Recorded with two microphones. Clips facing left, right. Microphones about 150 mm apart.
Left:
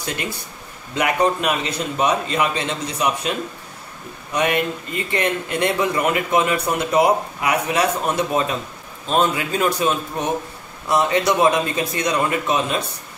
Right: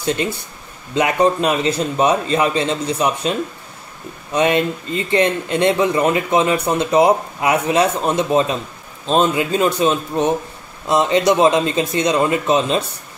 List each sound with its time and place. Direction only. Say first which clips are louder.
0.9 s a man's voice: right 3 dB; 25° right (ahead or behind)